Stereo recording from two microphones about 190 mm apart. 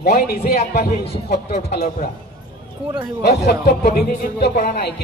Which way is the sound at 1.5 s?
40° left (ahead or behind).